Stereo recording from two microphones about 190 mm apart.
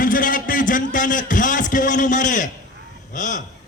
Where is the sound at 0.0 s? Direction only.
45° left (ahead or behind).